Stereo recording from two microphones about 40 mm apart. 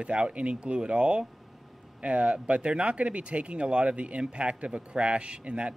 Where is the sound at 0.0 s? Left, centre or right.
Right.